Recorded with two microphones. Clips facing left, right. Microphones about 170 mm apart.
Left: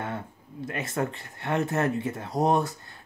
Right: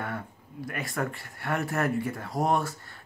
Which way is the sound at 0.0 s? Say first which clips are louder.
Left 1 dB; 25° left (ahead or behind).